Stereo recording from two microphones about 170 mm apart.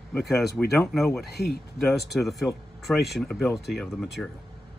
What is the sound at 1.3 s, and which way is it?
Speech, 70° left (ahead or behind).